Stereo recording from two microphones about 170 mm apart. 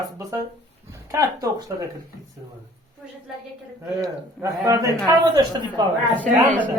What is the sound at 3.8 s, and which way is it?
A man's voice, 20° right (ahead or behind).